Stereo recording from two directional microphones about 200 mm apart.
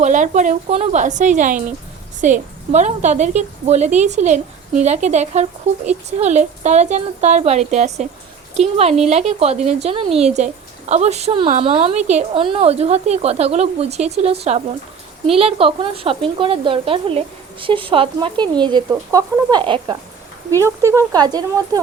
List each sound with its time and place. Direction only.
0.0 s a woman's voice: 40° right (ahead or behind)
15.4 s speech: 30° right (ahead or behind)